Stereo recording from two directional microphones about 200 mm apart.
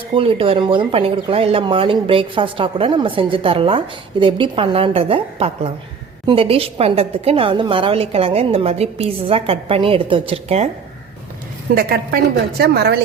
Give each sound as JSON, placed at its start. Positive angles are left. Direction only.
{"t": 0.1, "sound": "speech", "side_deg": -30}
{"t": 11.7, "sound": "a woman's voice", "side_deg": -45}